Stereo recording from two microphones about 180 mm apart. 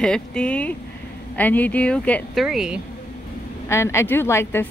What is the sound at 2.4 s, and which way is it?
Speech, 5° right (ahead or behind).